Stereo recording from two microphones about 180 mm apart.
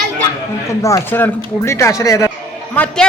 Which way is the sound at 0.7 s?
15° left (ahead or behind).